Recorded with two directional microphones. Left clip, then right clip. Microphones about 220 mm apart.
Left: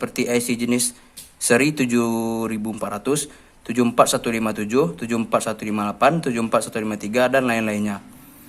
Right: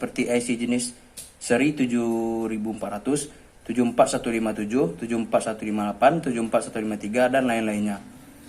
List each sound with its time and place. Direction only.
0.0 s speech: 45° left (ahead or behind)